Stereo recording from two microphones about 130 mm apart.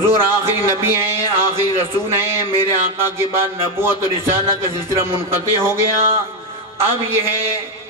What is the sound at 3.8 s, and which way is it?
A man's voice, 20° right (ahead or behind).